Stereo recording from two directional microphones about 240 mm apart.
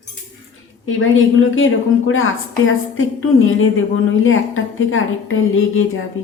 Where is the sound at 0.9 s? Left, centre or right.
Left.